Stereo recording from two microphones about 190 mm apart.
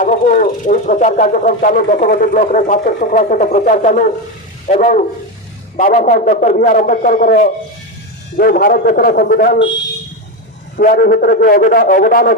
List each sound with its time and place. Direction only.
0.0 s speech: 45° left (ahead or behind)
4.7 s a sound: 40° left (ahead or behind)
5.7 s speech: 40° left (ahead or behind)
10.8 s speech: 50° left (ahead or behind)